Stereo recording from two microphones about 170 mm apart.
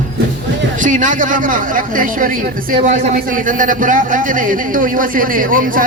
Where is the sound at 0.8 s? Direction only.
50° right (ahead or behind).